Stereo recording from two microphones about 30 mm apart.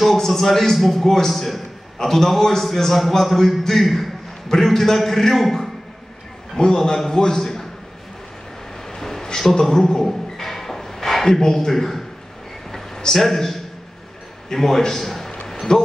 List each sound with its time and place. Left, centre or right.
0.0 s a man's voice: centre
1.0 s a man's voice: centre
8.9 s a sound: centre
9.4 s a man's voice: centre
10.0 s a sound: centre
11.3 s a man's voice: centre
13.1 s a man's voice: centre
14.5 s a man's voice: centre
15.7 s speech: left